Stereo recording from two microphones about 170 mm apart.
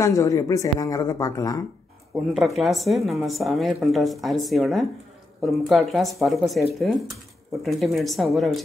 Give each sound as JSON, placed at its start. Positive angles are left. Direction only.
{"t": 0.0, "sound": "speech", "side_deg": 20}
{"t": 2.3, "sound": "a woman's voice", "side_deg": 0}